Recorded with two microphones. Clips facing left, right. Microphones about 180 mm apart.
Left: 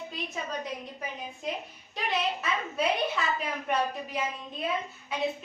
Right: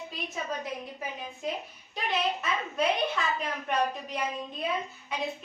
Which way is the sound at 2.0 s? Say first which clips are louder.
Even; centre (ahead or behind).